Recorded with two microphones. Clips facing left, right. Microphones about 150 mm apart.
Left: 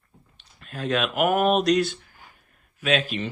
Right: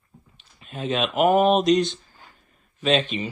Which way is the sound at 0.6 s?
Centre (ahead or behind).